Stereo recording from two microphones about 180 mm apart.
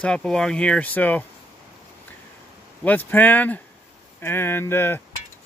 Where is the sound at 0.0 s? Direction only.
5° left (ahead or behind).